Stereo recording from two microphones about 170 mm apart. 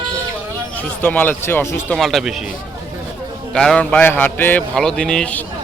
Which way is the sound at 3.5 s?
5° left (ahead or behind).